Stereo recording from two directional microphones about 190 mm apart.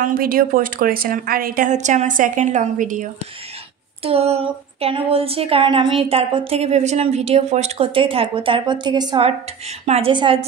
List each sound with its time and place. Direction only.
0.0 s a woman's voice: 50° right (ahead or behind)
4.0 s a woman's voice: 30° right (ahead or behind)